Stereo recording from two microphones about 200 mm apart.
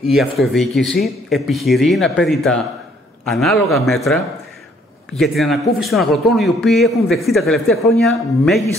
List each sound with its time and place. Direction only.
0.0 s a man's voice: centre (ahead or behind)